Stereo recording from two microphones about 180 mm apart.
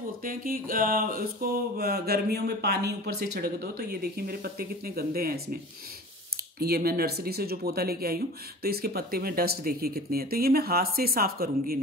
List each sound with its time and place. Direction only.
0.2 s speech: 50° right (ahead or behind)
6.6 s speech: 60° right (ahead or behind)